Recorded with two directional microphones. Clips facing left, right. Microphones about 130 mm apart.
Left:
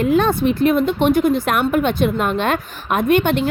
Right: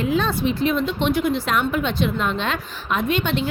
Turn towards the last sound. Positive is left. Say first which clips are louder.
# left 6 dB
turn(degrees=55)  # may be behind; listen again after turning